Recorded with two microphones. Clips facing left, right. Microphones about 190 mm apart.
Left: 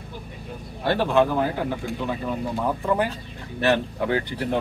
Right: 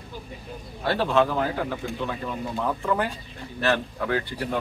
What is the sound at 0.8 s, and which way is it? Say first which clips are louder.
Speech: left 2 dB; 15° left (ahead or behind).